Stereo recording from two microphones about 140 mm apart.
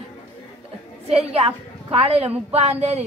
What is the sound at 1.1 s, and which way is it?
A woman's voice, 45° right (ahead or behind).